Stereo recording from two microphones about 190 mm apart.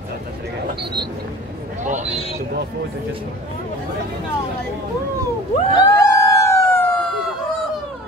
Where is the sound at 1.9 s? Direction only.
35° right (ahead or behind).